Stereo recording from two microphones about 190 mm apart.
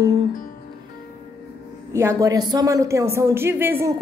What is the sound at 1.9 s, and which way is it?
A woman's voice, 15° right (ahead or behind).